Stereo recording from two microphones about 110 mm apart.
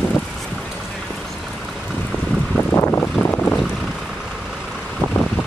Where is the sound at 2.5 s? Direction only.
20° left (ahead or behind).